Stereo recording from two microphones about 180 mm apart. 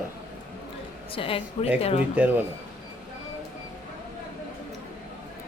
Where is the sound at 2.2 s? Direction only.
10° right (ahead or behind).